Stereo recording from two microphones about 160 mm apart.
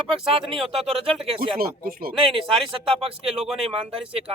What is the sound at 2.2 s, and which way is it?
Speech, 35° right (ahead or behind).